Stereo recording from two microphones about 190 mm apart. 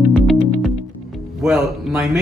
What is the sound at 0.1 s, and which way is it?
Music, centre (ahead or behind).